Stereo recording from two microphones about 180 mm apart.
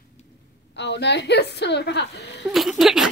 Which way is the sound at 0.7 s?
70° left (ahead or behind).